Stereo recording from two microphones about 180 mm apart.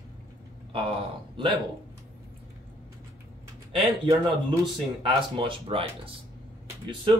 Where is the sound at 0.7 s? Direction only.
30° right (ahead or behind).